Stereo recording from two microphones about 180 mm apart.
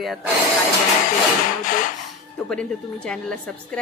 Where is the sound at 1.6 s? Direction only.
50° left (ahead or behind).